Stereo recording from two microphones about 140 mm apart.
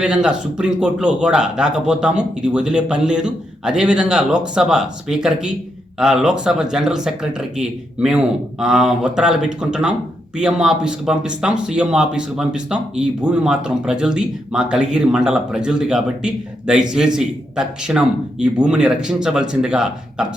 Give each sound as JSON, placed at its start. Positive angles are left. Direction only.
{"t": 0.0, "sound": "speech", "side_deg": -5}